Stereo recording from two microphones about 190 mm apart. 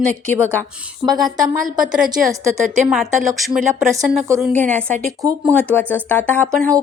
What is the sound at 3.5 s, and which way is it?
Speech, 15° right (ahead or behind).